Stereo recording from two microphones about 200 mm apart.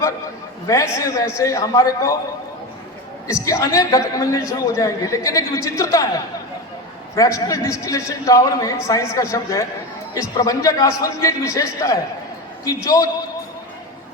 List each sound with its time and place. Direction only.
0.7 s a man's voice: 15° left (ahead or behind)
3.2 s a man's voice: 15° left (ahead or behind)